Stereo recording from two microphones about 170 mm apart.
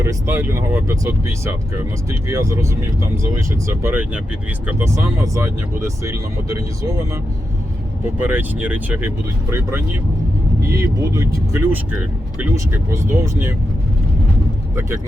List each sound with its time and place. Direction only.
0.0 s speech: 15° right (ahead or behind)
8.2 s speech: 10° right (ahead or behind)